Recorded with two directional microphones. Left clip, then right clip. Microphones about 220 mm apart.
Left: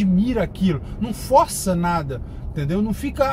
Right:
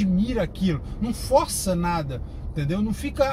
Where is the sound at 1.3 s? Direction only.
15° left (ahead or behind).